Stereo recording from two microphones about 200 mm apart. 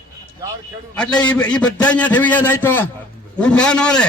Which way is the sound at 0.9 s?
5° left (ahead or behind).